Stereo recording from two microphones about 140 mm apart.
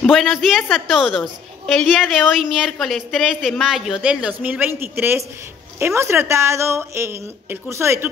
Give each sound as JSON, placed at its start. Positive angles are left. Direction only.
{"t": 0.0, "sound": "a woman's voice", "side_deg": 0}